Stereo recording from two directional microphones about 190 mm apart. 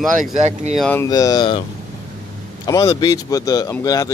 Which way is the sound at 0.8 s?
10° left (ahead or behind).